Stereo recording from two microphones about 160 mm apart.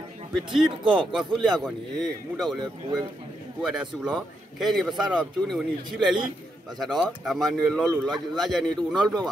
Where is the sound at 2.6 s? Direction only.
25° right (ahead or behind).